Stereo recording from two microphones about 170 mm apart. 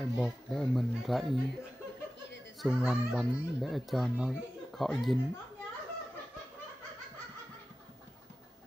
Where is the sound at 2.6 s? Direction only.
5° right (ahead or behind).